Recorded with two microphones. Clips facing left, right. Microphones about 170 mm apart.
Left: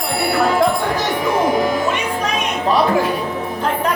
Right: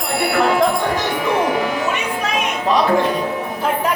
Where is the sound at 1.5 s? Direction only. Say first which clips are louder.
Left 2 dB; 40° left (ahead or behind).